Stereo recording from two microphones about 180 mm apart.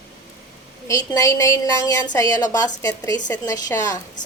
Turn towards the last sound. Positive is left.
turn(degrees=20)  # may be behind; listen again after turning